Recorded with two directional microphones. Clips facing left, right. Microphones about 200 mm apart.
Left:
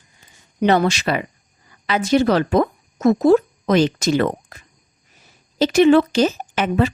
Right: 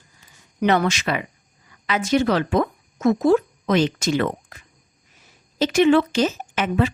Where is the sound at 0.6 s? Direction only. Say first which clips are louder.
Left 3 dB; 30° left (ahead or behind).